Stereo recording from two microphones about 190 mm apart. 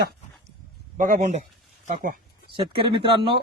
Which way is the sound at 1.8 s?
45° right (ahead or behind).